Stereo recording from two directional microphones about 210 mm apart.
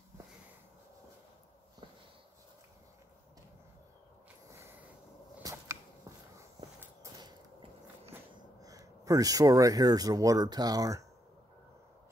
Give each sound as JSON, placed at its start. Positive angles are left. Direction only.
{"t": 4.5, "sound": "a sound", "side_deg": -10}
{"t": 6.8, "sound": "walk", "side_deg": -15}
{"t": 8.6, "sound": "speech", "side_deg": -15}